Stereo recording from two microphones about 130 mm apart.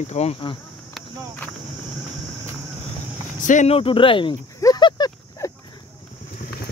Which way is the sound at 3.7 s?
45° left (ahead or behind).